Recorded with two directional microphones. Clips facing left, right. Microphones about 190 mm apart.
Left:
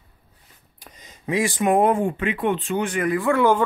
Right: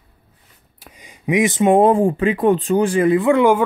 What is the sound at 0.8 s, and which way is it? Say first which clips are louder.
Speech: right 3 dB; 10° right (ahead or behind).